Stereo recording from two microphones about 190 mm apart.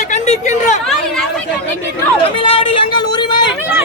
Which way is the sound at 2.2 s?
30° left (ahead or behind).